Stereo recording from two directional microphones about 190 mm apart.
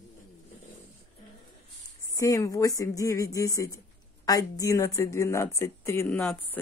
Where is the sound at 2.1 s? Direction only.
15° left (ahead or behind).